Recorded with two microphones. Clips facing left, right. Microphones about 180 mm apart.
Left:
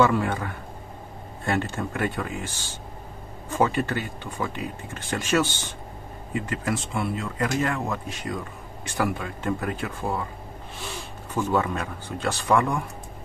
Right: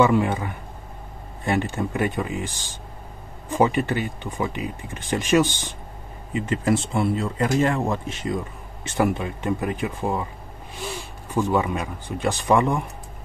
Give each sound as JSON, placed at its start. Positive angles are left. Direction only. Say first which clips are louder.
{"t": 0.0, "sound": "speech", "louder": "right 3 dB", "side_deg": -15}
{"t": 11.3, "sound": "speech", "louder": "right 2 dB", "side_deg": -15}